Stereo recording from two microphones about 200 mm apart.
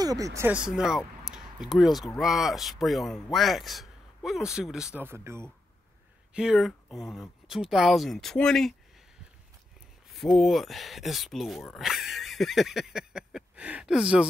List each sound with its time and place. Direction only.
0.0 s speech: 15° right (ahead or behind); by 8.7 s 5° left (ahead or behind)
10.3 s speech: centre (ahead or behind)